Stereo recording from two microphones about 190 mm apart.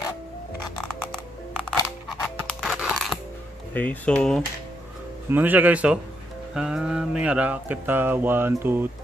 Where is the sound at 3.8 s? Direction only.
5° left (ahead or behind).